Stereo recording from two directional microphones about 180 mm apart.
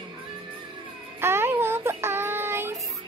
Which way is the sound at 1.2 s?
15° right (ahead or behind).